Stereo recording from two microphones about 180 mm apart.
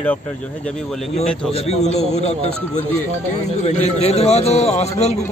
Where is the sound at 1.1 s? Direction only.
35° left (ahead or behind).